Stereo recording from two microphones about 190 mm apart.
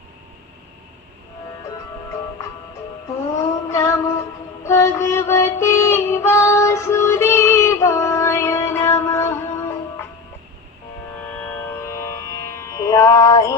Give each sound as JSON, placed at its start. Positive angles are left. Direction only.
{"t": 3.7, "sound": "music", "side_deg": 15}
{"t": 11.3, "sound": "music", "side_deg": 15}